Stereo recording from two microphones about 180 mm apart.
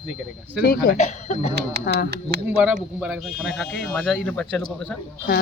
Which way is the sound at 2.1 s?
65° right (ahead or behind).